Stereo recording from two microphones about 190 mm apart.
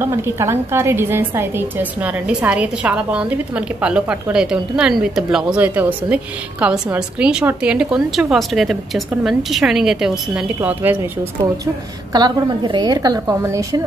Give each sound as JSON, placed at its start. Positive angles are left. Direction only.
{"t": 0.0, "sound": "a woman's voice", "side_deg": -15}
{"t": 11.6, "sound": "a woman's voice", "side_deg": -20}